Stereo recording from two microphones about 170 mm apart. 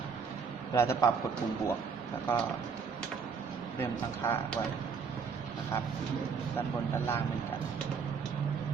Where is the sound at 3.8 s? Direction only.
15° left (ahead or behind).